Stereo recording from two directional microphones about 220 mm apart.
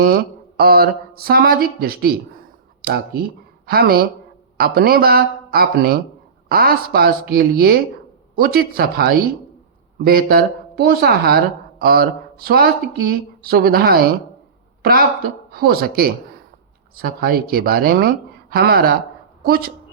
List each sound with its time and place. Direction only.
0.0 s a woman's voice: 45° right (ahead or behind)